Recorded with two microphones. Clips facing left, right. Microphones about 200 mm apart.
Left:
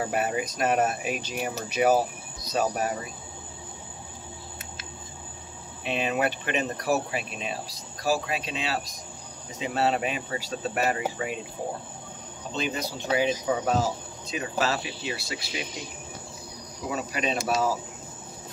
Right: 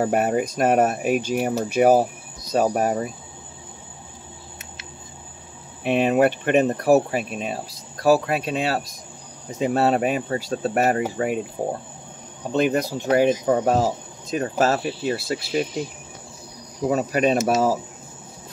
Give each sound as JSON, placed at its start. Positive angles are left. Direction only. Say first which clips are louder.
{"t": 0.0, "sound": "speech", "louder": "right 7 dB", "side_deg": -50}
{"t": 5.9, "sound": "speech", "louder": "right 9 dB", "side_deg": -55}
{"t": 8.0, "sound": "speech", "louder": "right 9 dB", "side_deg": -60}
{"t": 12.4, "sound": "speech", "louder": "right 10 dB", "side_deg": -55}
{"t": 16.9, "sound": "speech", "louder": "right 9 dB", "side_deg": -50}